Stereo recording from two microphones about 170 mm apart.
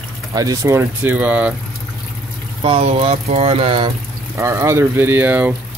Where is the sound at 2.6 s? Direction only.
35° right (ahead or behind).